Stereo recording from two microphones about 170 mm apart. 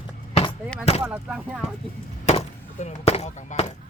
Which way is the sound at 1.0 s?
5° right (ahead or behind).